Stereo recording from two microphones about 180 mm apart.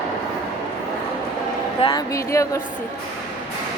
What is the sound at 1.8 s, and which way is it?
Speech, 30° left (ahead or behind).